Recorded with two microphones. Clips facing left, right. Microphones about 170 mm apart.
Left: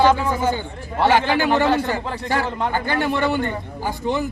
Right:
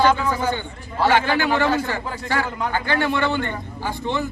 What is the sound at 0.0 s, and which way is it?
A man's voice, 20° left (ahead or behind).